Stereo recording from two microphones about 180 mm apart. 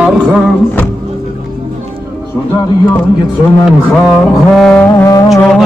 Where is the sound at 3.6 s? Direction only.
5° left (ahead or behind).